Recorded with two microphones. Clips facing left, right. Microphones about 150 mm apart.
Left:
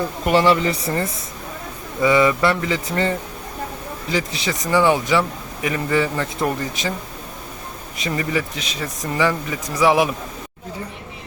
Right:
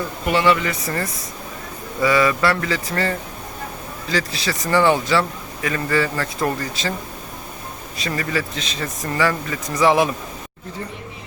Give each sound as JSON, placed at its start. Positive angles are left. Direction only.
{"t": 0.3, "sound": "speech", "side_deg": 40}
{"t": 7.9, "sound": "speech", "side_deg": 20}